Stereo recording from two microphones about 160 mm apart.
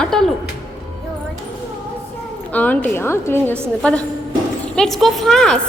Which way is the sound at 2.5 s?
10° left (ahead or behind).